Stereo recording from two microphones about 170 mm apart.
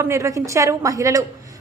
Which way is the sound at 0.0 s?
15° right (ahead or behind).